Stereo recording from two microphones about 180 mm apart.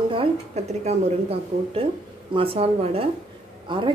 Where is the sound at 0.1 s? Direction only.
35° right (ahead or behind).